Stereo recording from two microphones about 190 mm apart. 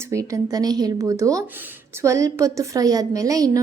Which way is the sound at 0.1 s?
15° right (ahead or behind).